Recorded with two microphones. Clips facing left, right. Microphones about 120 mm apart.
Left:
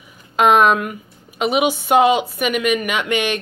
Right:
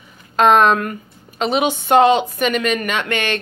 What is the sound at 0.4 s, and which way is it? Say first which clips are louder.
A woman's voice: right 1 dB; 10° left (ahead or behind).